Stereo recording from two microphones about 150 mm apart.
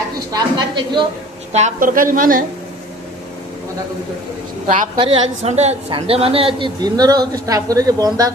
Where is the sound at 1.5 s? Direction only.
60° right (ahead or behind).